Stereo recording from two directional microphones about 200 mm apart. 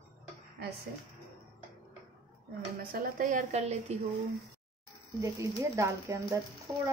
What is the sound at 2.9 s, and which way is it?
A woman's voice, 40° right (ahead or behind).